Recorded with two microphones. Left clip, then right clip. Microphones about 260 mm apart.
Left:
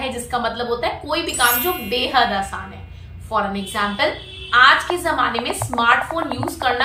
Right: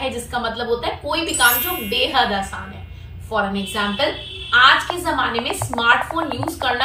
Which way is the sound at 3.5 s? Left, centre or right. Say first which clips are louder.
Even; centre.